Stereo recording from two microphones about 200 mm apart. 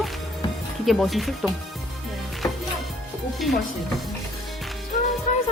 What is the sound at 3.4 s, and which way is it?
Speech, centre (ahead or behind).